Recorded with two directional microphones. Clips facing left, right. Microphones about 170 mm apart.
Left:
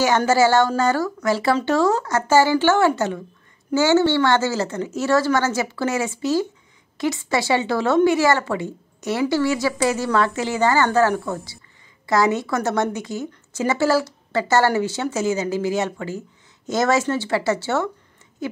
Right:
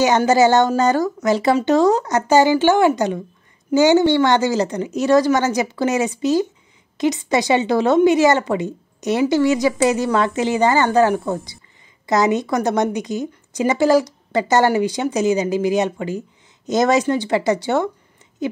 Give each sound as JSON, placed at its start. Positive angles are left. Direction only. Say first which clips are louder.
{"t": 0.0, "sound": "a woman's voice", "louder": "right 3 dB", "side_deg": -20}